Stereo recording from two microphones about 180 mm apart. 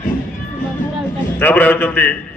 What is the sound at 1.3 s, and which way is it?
Speech, 10° left (ahead or behind).